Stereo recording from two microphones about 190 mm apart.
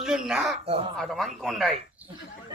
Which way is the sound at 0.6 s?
30° right (ahead or behind).